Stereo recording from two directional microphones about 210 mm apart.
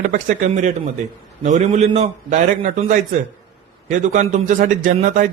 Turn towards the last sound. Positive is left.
turn(degrees=-35)  # may be behind; listen again after turning